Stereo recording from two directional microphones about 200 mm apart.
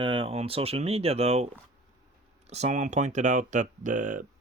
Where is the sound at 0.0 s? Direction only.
25° right (ahead or behind).